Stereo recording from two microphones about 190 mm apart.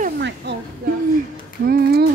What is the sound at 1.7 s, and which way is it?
Speech, 55° right (ahead or behind).